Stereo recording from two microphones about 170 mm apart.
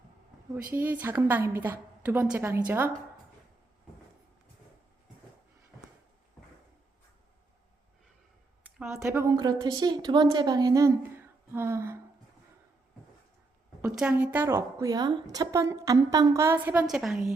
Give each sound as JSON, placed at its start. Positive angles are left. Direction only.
{"t": 0.7, "sound": "a woman's voice", "side_deg": -10}
{"t": 9.0, "sound": "a woman's voice", "side_deg": -15}
{"t": 13.8, "sound": "a woman's voice", "side_deg": -5}